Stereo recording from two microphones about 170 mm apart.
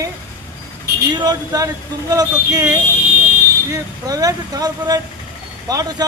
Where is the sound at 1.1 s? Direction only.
25° right (ahead or behind).